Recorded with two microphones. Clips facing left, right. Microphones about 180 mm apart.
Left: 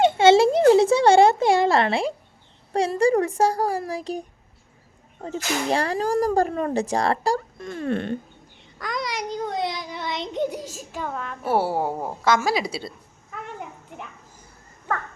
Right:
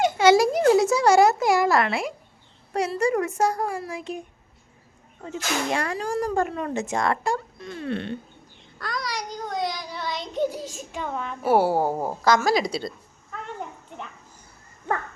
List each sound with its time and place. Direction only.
0.0 s a sound: 25° left (ahead or behind)
3.0 s speech: 30° left (ahead or behind)
7.6 s speech: 45° left (ahead or behind)
8.8 s child singing: 20° left (ahead or behind)
10.8 s a woman's voice: centre (ahead or behind)
12.2 s a woman's voice: 5° left (ahead or behind)